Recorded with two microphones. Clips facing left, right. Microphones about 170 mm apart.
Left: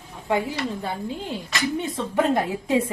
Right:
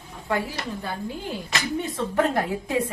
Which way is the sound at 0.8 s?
20° left (ahead or behind).